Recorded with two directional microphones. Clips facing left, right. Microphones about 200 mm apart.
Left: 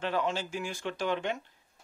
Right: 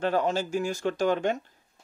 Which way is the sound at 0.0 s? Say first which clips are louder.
Right 5 dB; 45° right (ahead or behind).